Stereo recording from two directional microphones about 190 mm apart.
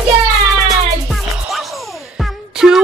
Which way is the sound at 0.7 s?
Centre (ahead or behind).